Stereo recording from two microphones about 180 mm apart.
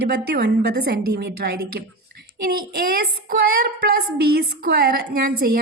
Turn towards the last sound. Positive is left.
turn(degrees=-55)  # may be behind; listen again after turning